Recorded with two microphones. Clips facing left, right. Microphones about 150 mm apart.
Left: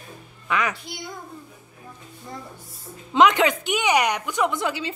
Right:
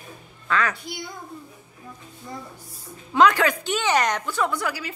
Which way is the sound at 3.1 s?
20° left (ahead or behind).